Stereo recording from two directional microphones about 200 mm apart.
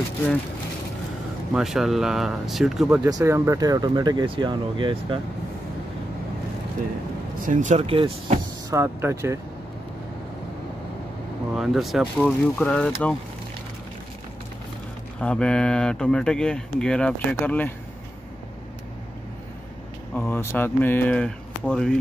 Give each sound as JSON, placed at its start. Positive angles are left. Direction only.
{"t": 1.5, "sound": "speech", "side_deg": 0}
{"t": 3.1, "sound": "speech", "side_deg": -15}
{"t": 7.4, "sound": "speech", "side_deg": -40}
{"t": 8.7, "sound": "speech", "side_deg": -15}
{"t": 11.5, "sound": "speech", "side_deg": 0}
{"t": 15.1, "sound": "speech", "side_deg": 5}
{"t": 20.2, "sound": "speech", "side_deg": 10}